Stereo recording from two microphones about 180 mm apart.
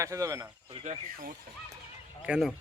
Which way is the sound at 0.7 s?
45° right (ahead or behind).